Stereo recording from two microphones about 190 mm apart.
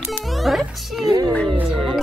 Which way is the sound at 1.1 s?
20° right (ahead or behind).